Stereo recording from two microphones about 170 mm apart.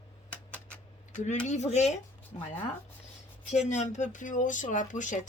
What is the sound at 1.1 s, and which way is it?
Speech, 45° left (ahead or behind).